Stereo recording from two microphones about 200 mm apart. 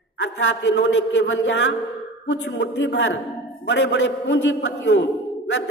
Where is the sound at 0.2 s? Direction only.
65° left (ahead or behind).